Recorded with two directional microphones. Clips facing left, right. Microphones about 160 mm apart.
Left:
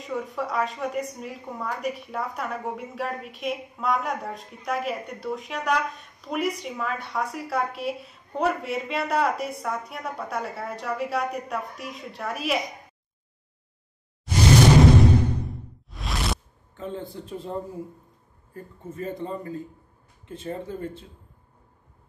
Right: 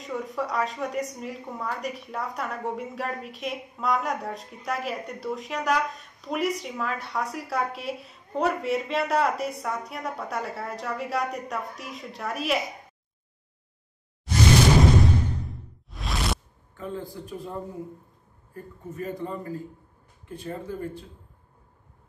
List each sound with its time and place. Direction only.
0.0 s a woman's voice: centre (ahead or behind)
15.4 s whoosh: centre (ahead or behind)
16.7 s a man's voice: 20° left (ahead or behind)